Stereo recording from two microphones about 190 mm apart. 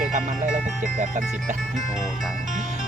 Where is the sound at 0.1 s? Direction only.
40° right (ahead or behind).